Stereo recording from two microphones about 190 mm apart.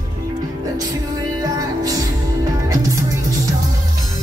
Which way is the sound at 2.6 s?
15° right (ahead or behind).